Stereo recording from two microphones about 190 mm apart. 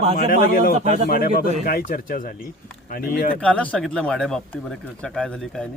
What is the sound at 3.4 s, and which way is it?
Speech, 5° left (ahead or behind).